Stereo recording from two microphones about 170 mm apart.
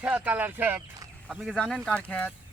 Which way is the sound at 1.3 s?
Centre (ahead or behind).